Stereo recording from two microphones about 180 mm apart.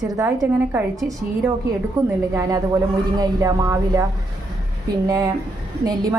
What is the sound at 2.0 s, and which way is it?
A woman's voice, 20° right (ahead or behind).